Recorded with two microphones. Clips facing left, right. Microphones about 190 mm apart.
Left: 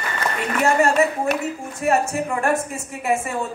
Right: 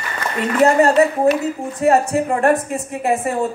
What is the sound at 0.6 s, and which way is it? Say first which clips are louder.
A woman's voice: right 5 dB; 35° right (ahead or behind).